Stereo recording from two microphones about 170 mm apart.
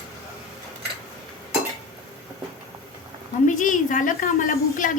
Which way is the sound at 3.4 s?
50° left (ahead or behind).